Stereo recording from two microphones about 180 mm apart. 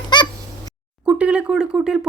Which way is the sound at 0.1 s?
25° left (ahead or behind).